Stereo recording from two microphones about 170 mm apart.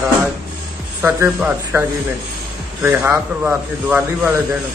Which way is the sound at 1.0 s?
10° right (ahead or behind).